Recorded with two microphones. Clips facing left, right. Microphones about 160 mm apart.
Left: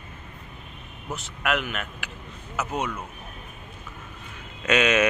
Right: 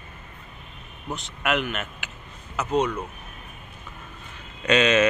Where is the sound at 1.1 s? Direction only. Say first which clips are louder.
Right 1 dB; centre (ahead or behind).